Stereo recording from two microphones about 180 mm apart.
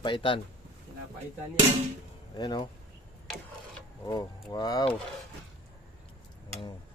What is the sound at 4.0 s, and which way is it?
Speech, 20° left (ahead or behind).